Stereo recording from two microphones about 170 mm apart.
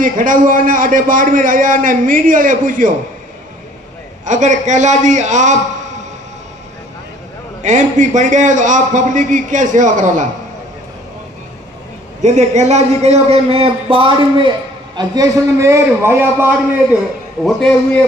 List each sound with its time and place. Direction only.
0.0 s a man's voice: 50° right (ahead or behind)
4.2 s a man's voice: 45° right (ahead or behind)
7.6 s a man's voice: 45° right (ahead or behind)
12.2 s a man's voice: 45° right (ahead or behind); by 17.0 s 10° right (ahead or behind)